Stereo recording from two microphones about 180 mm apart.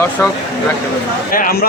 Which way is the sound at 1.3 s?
55° left (ahead or behind).